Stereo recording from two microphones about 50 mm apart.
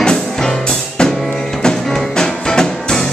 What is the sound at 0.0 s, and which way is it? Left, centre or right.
Music, centre.